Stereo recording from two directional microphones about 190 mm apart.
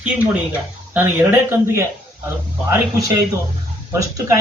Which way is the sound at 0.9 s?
10° right (ahead or behind).